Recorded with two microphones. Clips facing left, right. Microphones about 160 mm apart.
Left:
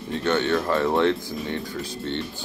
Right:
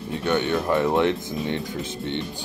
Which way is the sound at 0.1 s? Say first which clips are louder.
Left 1 dB; 15° right (ahead or behind).